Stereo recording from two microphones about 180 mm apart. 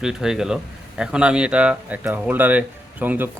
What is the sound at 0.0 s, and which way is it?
Speech, 5° right (ahead or behind).